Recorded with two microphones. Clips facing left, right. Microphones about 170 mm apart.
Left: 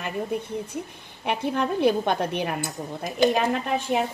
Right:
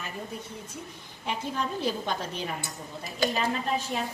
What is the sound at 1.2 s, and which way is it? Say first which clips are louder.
A woman's voice: left 6 dB; 65° left (ahead or behind).